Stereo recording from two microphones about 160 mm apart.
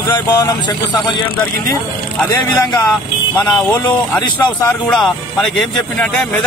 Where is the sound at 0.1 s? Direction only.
25° left (ahead or behind).